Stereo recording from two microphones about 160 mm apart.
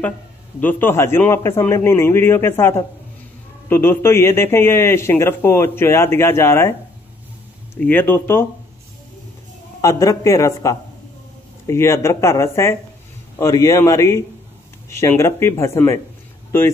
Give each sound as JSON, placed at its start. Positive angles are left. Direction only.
{"t": 0.6, "sound": "a man's voice", "side_deg": 10}
{"t": 7.7, "sound": "a man's voice", "side_deg": 10}
{"t": 9.8, "sound": "a man's voice", "side_deg": 20}